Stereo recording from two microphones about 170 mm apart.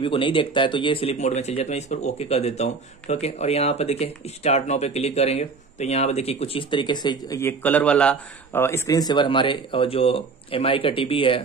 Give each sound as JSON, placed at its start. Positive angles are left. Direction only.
{"t": 0.0, "sound": "speech", "side_deg": 30}